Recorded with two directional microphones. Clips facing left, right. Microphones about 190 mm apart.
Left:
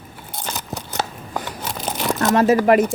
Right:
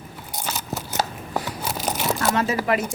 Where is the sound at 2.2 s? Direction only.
40° left (ahead or behind).